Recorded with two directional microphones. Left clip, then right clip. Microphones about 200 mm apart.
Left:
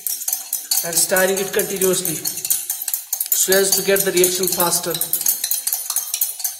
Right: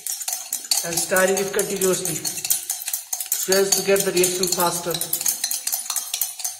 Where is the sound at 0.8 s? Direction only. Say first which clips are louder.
Left 3 dB; 25° left (ahead or behind).